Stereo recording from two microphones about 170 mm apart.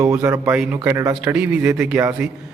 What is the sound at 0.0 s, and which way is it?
A man's voice, 15° right (ahead or behind).